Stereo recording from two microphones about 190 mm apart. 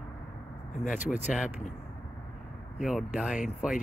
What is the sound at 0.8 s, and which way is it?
Speech, 40° left (ahead or behind).